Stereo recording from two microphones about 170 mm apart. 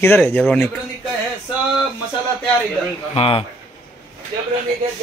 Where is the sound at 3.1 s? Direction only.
30° left (ahead or behind).